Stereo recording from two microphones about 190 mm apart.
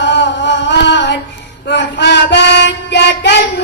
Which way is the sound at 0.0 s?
70° left (ahead or behind).